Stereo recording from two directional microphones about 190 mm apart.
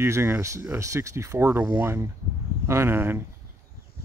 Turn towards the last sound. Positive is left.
turn(degrees=-10)  # may be behind; listen again after turning